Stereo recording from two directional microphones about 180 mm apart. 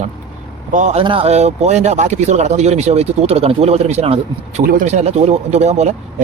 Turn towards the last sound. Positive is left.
turn(degrees=-40)  # may be behind; listen again after turning